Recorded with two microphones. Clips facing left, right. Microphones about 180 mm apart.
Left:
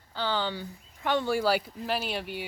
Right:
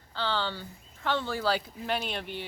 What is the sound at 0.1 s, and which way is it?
Speech, 10° left (ahead or behind).